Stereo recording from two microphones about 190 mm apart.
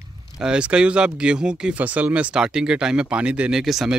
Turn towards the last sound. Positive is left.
turn(degrees=0)  # may be behind; listen again after turning